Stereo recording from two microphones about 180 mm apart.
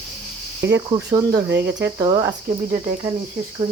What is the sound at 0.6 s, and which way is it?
Speech, 70° right (ahead or behind).